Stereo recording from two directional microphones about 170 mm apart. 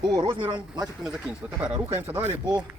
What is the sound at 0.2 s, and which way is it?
Speech, 30° right (ahead or behind).